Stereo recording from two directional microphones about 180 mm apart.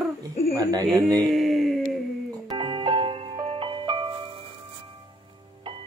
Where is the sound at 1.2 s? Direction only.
Centre (ahead or behind).